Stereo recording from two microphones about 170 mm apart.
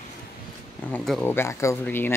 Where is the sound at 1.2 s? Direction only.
15° left (ahead or behind).